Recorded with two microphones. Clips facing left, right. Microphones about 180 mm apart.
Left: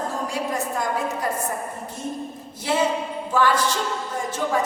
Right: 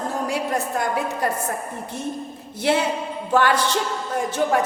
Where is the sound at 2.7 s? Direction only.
65° right (ahead or behind).